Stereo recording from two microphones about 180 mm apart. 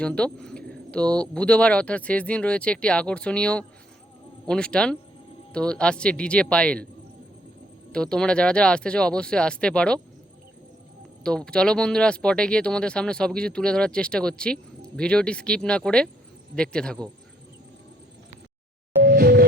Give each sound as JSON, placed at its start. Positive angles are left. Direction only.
{"t": 0.0, "sound": "speech", "side_deg": 5}
{"t": 7.9, "sound": "speech", "side_deg": 5}
{"t": 11.2, "sound": "speech", "side_deg": 5}
{"t": 19.0, "sound": "music", "side_deg": -60}